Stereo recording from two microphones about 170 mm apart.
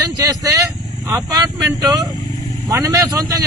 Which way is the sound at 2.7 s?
20° right (ahead or behind).